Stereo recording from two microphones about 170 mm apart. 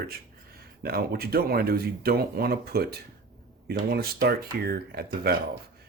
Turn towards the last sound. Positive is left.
turn(degrees=-65)  # may be behind; listen again after turning